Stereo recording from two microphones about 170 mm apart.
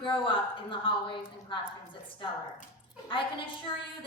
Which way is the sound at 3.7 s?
30° left (ahead or behind).